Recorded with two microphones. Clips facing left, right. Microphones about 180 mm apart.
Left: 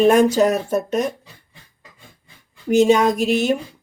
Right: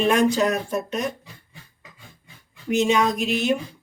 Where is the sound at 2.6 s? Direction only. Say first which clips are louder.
Left 6 dB; 45° left (ahead or behind).